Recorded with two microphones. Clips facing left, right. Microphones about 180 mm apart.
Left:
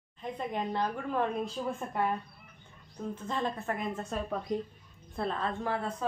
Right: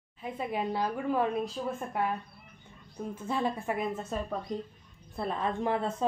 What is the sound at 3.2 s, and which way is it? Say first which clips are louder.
A woman's voice: right 3 dB; 10° right (ahead or behind).